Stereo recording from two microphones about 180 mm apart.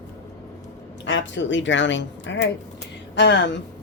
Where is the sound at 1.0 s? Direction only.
85° left.